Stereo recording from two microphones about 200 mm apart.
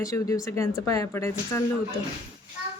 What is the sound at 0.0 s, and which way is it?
Speech, 15° left (ahead or behind).